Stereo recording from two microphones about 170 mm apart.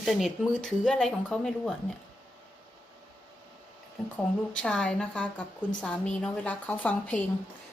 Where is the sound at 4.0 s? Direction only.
Centre (ahead or behind).